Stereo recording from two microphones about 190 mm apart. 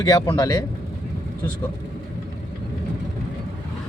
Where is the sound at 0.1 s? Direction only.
20° left (ahead or behind).